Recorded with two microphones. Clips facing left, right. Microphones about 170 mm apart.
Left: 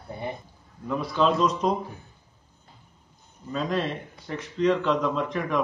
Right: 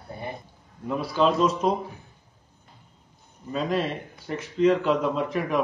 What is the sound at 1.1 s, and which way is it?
Speech, 5° right (ahead or behind).